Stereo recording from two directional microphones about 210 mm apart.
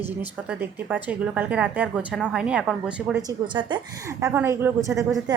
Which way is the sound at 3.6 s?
20° right (ahead or behind).